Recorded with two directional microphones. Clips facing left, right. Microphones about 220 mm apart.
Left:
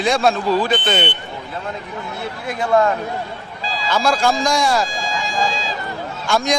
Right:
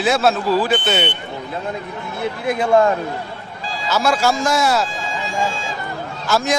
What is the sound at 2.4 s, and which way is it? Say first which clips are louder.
Speech: right 2 dB; 20° right (ahead or behind).